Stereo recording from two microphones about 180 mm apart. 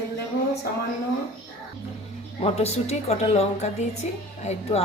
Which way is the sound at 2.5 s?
35° left (ahead or behind).